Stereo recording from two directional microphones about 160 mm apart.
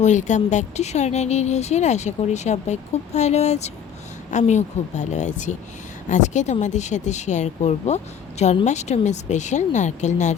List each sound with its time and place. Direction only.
0.0 s speech: 50° left (ahead or behind)